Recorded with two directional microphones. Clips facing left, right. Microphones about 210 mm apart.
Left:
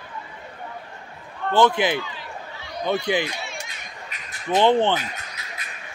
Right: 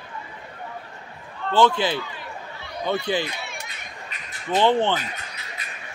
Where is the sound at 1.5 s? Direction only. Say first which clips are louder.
Left 1 dB; 20° left (ahead or behind).